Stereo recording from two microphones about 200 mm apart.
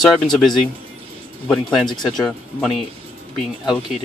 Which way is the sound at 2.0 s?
Centre (ahead or behind).